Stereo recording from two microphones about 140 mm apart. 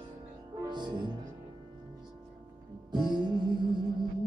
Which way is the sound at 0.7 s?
30° right (ahead or behind).